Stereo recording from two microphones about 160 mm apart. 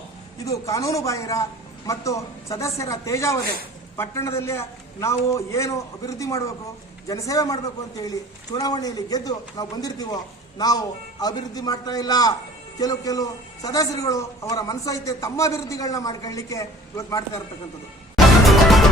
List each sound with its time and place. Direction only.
0.4 s a man's voice: 20° left (ahead or behind)
18.4 s music: centre (ahead or behind)